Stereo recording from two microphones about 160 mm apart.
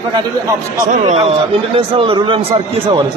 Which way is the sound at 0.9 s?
40° right (ahead or behind).